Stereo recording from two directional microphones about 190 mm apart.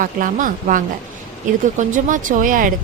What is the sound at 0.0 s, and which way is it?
A woman's voice, 45° right (ahead or behind).